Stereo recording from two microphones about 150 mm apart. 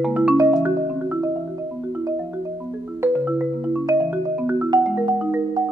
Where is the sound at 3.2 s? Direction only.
10° right (ahead or behind).